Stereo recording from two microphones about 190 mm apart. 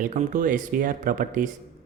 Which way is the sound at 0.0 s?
40° right (ahead or behind).